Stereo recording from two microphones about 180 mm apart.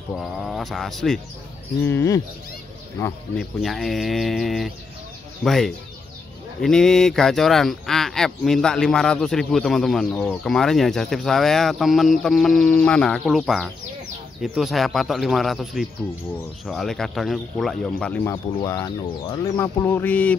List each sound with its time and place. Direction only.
0.1 s speech: centre (ahead or behind)
1.8 s speech: 15° left (ahead or behind)
3.3 s speech: centre (ahead or behind)
18.2 s speech: 20° left (ahead or behind)